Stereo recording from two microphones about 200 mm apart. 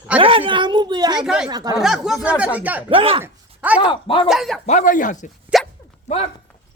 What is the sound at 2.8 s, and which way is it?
Speech, 25° right (ahead or behind).